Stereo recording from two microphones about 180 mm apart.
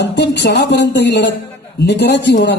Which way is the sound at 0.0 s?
70° left (ahead or behind).